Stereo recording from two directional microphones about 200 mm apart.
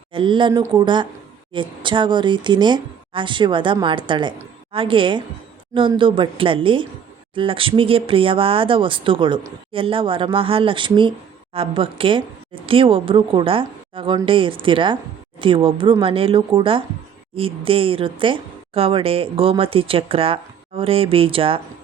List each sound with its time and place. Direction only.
0.1 s speech: 25° right (ahead or behind)